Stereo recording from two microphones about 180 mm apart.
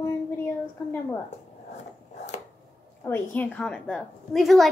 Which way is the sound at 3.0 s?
10° left (ahead or behind).